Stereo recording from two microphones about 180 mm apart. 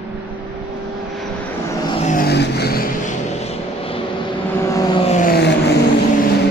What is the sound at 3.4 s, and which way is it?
Vehicle, 35° left (ahead or behind).